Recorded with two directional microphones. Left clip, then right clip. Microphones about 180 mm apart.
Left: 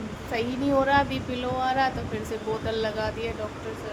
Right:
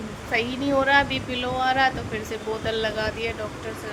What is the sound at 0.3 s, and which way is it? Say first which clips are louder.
A woman's voice: right 2 dB; 5° left (ahead or behind).